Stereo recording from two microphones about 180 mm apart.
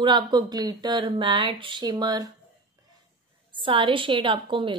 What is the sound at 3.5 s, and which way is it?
Speech, 30° right (ahead or behind).